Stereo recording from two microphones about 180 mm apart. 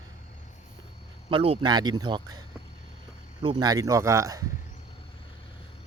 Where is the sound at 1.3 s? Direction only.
30° right (ahead or behind).